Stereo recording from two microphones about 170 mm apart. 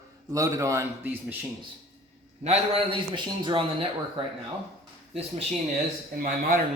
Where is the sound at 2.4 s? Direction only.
35° right (ahead or behind).